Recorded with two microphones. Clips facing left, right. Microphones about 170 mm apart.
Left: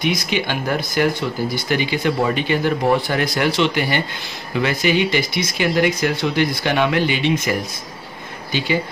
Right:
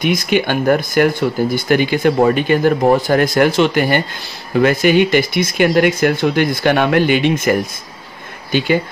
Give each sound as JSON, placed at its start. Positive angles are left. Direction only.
{"t": 0.0, "sound": "speech", "side_deg": -50}